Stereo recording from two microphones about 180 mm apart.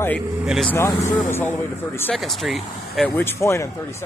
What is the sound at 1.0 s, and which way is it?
Speech, 45° left (ahead or behind).